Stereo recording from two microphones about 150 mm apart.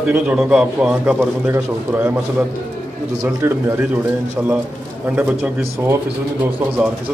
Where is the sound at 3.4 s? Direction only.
15° right (ahead or behind).